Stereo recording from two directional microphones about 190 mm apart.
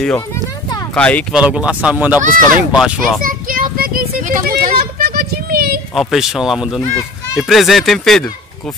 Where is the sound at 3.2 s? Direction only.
45° right (ahead or behind).